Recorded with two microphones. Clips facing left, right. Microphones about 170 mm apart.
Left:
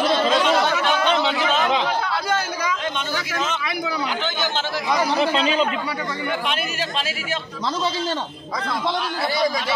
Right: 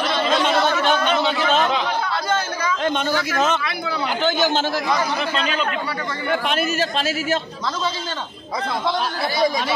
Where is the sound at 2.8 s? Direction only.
50° right (ahead or behind).